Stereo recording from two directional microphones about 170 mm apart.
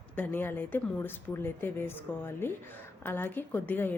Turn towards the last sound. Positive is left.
turn(degrees=10)  # may be behind; listen again after turning